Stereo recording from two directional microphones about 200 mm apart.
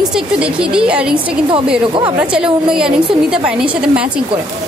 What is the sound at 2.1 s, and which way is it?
A woman's voice, 5° right (ahead or behind).